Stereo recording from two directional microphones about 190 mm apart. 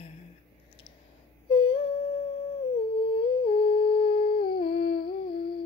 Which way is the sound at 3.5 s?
25° left (ahead or behind).